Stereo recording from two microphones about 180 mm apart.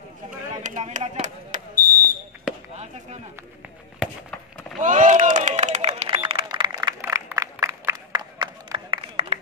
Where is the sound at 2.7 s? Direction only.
40° right (ahead or behind).